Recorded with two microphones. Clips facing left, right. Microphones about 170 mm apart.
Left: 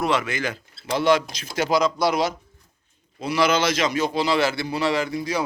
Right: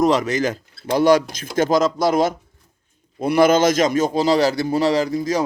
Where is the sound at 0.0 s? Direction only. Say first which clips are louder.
Right 6 dB; 40° right (ahead or behind).